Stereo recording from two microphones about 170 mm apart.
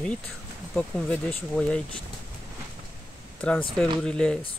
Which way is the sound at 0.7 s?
10° left (ahead or behind).